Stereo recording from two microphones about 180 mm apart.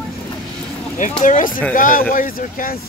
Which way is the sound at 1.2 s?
45° left (ahead or behind).